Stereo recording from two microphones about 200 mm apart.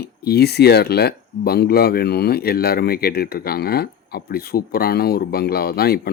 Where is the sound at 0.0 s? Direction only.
50° left (ahead or behind).